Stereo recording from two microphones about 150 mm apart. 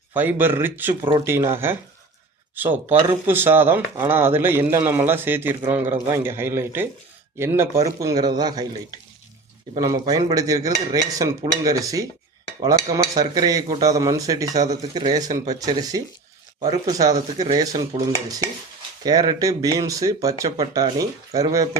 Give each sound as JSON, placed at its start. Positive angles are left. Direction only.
{"t": 0.1, "sound": "speech", "side_deg": -10}
{"t": 7.9, "sound": "dishes", "side_deg": -20}